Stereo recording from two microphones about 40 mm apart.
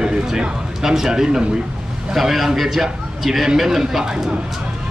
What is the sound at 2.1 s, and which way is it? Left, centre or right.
A man's voice, centre.